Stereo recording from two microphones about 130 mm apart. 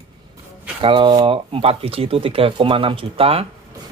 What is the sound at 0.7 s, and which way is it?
Speech, 40° right (ahead or behind).